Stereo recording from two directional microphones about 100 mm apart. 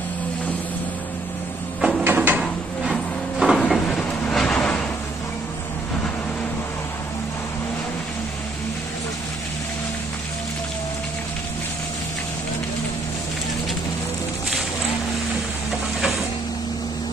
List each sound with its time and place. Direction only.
1.8 s printer: 5° right (ahead or behind)
2.0 s a sound: 20° right (ahead or behind)
2.4 s train: centre (ahead or behind)